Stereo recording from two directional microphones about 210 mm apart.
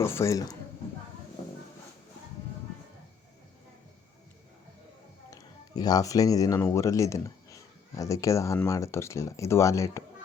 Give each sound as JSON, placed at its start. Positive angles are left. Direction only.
{"t": 0.0, "sound": "speech", "side_deg": 10}
{"t": 5.3, "sound": "speech", "side_deg": 15}